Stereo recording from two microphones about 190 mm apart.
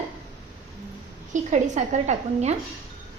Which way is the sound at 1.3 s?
40° right (ahead or behind).